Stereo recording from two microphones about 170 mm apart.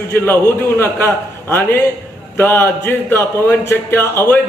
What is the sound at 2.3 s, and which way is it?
A man's voice, 15° left (ahead or behind).